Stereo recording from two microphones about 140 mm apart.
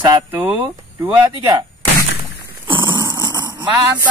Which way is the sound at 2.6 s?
35° right (ahead or behind).